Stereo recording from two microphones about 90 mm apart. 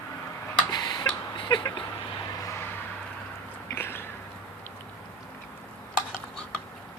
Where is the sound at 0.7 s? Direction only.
50° left (ahead or behind).